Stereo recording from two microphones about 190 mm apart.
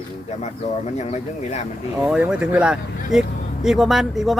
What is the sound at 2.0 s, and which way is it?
Speech, 5° right (ahead or behind).